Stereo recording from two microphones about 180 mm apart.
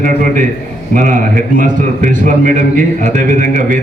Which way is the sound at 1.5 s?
45° right (ahead or behind).